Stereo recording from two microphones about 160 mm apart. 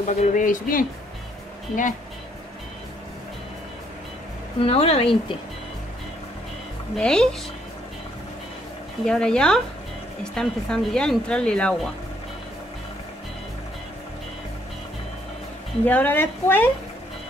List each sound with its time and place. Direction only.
0.0 s speech: 50° left (ahead or behind)
4.6 s speech: 40° left (ahead or behind)
7.0 s speech: 5° left (ahead or behind)
9.0 s speech: 5° left (ahead or behind)
15.8 s a woman's voice: 10° left (ahead or behind)